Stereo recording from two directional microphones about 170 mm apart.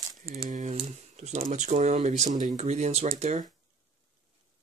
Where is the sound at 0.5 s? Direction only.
40° right (ahead or behind).